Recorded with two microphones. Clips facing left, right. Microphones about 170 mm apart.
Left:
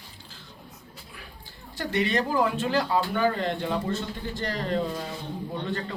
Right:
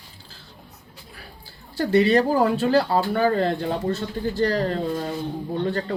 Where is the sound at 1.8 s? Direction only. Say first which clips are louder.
Right 8 dB; 35° right (ahead or behind).